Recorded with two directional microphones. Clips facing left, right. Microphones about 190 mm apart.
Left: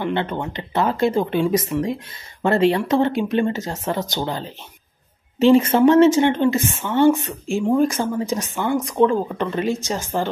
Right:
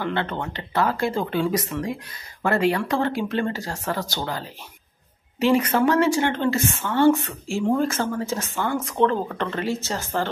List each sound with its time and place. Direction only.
0.0 s a woman's voice: 20° left (ahead or behind)